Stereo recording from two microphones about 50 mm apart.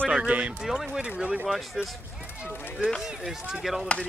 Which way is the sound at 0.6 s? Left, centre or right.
Centre.